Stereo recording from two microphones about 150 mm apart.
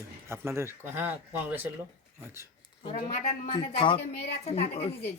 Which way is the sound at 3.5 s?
35° left (ahead or behind).